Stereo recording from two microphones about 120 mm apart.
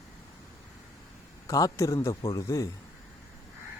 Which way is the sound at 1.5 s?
30° left (ahead or behind).